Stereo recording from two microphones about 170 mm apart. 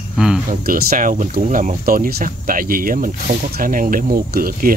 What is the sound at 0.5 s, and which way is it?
Speech, 60° right (ahead or behind).